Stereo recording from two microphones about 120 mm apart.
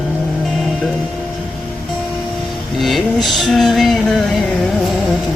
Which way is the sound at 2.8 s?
Centre (ahead or behind).